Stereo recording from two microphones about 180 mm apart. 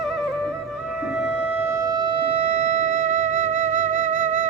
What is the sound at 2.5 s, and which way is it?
Music, 40° right (ahead or behind).